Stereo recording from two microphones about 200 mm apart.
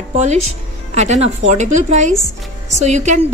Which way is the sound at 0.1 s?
35° right (ahead or behind).